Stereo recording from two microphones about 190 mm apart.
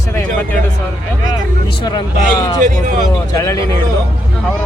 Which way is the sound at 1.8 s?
20° left (ahead or behind).